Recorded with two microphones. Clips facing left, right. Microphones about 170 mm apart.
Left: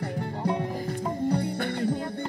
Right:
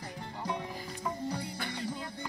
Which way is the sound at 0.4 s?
60° left (ahead or behind).